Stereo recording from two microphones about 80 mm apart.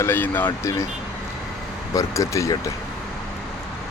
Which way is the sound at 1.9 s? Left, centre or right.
Left.